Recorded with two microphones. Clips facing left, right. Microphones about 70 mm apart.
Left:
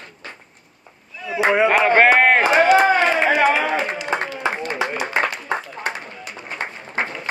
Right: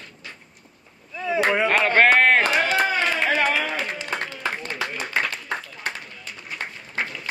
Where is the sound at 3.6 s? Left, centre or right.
Left.